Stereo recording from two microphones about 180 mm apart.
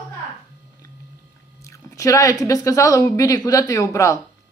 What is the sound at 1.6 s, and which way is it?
Speech, 15° left (ahead or behind).